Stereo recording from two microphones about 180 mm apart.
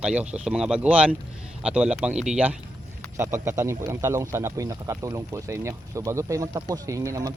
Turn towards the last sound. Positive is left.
turn(degrees=-20)  # may be behind; listen again after turning